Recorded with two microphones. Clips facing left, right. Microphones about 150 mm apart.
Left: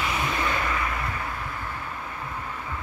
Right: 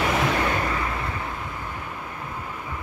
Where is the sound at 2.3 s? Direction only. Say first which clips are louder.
Even; 10° right (ahead or behind).